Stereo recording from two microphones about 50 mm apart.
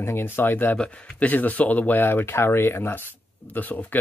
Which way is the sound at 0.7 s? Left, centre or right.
Centre.